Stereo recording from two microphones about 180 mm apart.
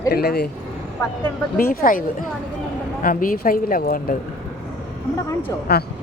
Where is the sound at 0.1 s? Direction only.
60° left (ahead or behind).